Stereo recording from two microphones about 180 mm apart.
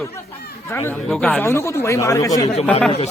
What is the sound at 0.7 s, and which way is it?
Speech, 10° left (ahead or behind).